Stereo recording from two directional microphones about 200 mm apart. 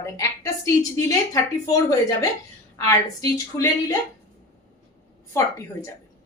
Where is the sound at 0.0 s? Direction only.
15° left (ahead or behind).